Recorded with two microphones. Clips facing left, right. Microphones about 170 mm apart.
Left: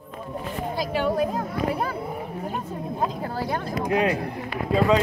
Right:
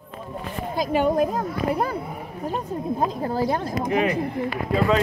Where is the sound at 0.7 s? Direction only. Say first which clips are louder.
Right 4 dB; 45° right (ahead or behind).